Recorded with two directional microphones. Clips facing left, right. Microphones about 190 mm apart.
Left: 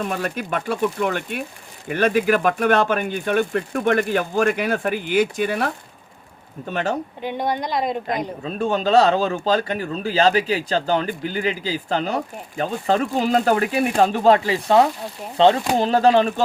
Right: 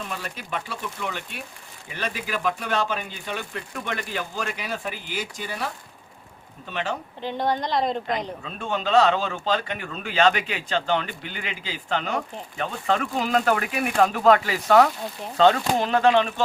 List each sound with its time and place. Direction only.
0.0 s speech: 55° left (ahead or behind)
6.7 s speech: 45° left (ahead or behind)
7.2 s speech: 15° left (ahead or behind)
8.4 s speech: 40° left (ahead or behind)